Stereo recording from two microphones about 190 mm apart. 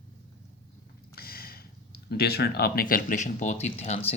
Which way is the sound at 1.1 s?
50° left (ahead or behind).